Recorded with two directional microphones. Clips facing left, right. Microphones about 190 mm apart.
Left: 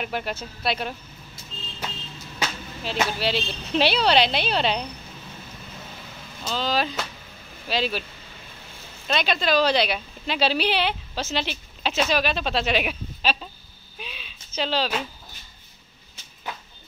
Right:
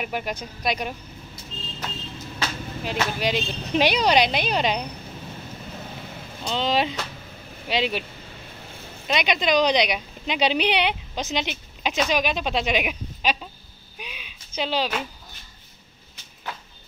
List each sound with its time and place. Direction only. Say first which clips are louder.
0.0 s a woman's voice: even; 10° right (ahead or behind)
2.8 s a woman's voice: even; 15° right (ahead or behind)
6.4 s speech: right 2 dB; 25° right (ahead or behind)
9.0 s a woman's voice: right 1 dB; 15° right (ahead or behind)
13.9 s a sound: even; 10° right (ahead or behind)